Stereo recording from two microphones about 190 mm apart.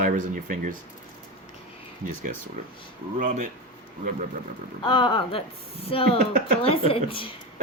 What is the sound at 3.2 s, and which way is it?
Speech, 40° right (ahead or behind).